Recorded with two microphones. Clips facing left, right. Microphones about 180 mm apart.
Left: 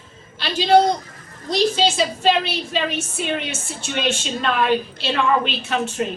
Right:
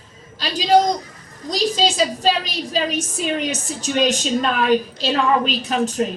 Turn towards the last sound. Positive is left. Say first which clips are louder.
# right 3 dB
turn(degrees=-40)  # may be behind; listen again after turning